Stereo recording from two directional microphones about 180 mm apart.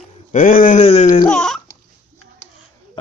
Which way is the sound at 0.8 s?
35° left (ahead or behind).